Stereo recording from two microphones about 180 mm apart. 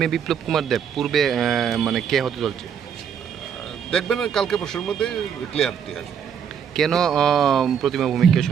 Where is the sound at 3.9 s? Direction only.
5° left (ahead or behind).